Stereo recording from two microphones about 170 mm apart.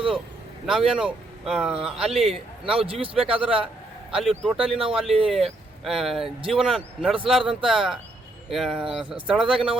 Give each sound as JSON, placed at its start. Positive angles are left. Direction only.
{"t": 0.6, "sound": "speech", "side_deg": 0}
{"t": 2.8, "sound": "a man's voice", "side_deg": -30}
{"t": 4.1, "sound": "speech", "side_deg": 0}